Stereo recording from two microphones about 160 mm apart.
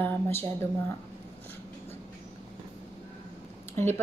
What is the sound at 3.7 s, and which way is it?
Speech, 15° left (ahead or behind).